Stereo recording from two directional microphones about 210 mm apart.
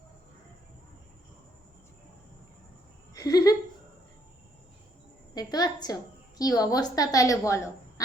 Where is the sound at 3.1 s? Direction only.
15° left (ahead or behind).